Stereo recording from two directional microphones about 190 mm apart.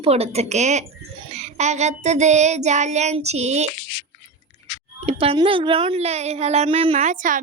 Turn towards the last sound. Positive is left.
turn(degrees=-45)  # may be behind; listen again after turning